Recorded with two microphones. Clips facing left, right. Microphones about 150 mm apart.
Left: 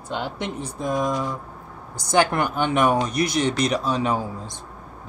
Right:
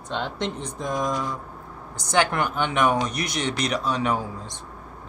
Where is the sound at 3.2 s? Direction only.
35° left (ahead or behind).